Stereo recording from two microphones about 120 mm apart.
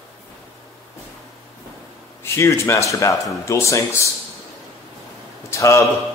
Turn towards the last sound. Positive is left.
turn(degrees=25)  # may be behind; listen again after turning